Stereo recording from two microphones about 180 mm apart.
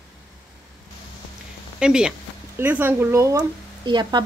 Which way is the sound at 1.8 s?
5° right (ahead or behind).